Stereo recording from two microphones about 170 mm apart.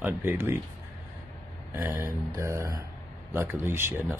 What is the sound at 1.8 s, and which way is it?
Speech, 15° right (ahead or behind).